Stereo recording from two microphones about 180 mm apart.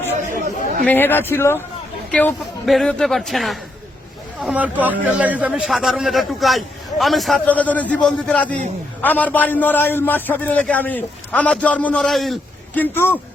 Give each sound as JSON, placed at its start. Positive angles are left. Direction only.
{"t": 0.2, "sound": "chatter", "side_deg": -45}
{"t": 0.9, "sound": "a man's voice", "side_deg": 10}